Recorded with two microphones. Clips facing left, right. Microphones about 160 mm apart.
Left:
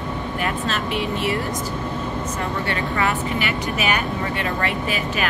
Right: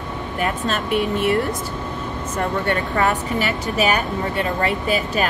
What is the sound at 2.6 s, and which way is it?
Speech, 45° right (ahead or behind).